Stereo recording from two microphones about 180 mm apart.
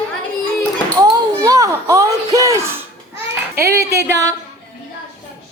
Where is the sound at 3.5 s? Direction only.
15° right (ahead or behind).